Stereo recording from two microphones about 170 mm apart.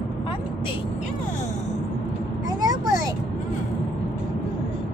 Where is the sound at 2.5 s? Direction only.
20° right (ahead or behind).